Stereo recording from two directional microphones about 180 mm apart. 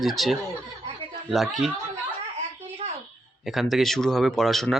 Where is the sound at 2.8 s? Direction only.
35° right (ahead or behind).